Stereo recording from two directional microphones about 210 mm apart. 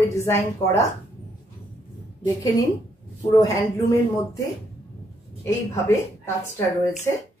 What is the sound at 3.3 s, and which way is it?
Speech, 15° left (ahead or behind).